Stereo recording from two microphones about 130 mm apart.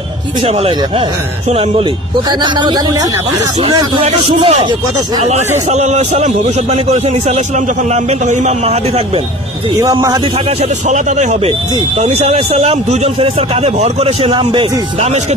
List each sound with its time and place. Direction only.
0.5 s a man's voice: 45° right (ahead or behind)
4.0 s a man's voice: 50° right (ahead or behind)
5.7 s a man's voice: 60° right (ahead or behind)
9.8 s speech: 25° right (ahead or behind)
10.6 s a man's voice: 70° right (ahead or behind)
12.0 s a man's voice: 55° right (ahead or behind)